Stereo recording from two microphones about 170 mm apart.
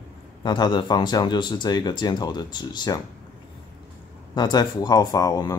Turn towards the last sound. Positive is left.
turn(degrees=20)  # may be behind; listen again after turning